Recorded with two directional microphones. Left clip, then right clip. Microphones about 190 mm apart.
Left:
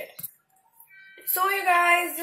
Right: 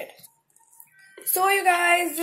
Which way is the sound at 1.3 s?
40° right (ahead or behind).